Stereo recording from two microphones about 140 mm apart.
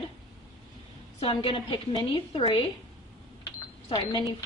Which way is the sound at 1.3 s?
40° left (ahead or behind).